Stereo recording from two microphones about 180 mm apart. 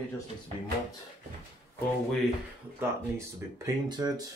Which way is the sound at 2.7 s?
15° right (ahead or behind).